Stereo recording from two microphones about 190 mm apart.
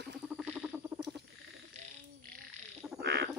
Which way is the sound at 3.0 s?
60° right (ahead or behind).